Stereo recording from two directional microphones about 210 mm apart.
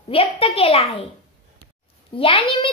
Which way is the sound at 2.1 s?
25° left (ahead or behind).